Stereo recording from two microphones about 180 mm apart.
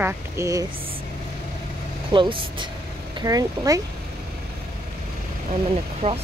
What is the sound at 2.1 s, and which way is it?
Speech, 25° right (ahead or behind).